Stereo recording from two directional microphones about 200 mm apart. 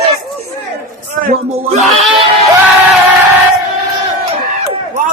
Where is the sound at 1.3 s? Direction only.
35° right (ahead or behind).